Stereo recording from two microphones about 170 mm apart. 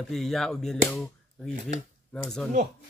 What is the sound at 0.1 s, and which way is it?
Speech, centre (ahead or behind).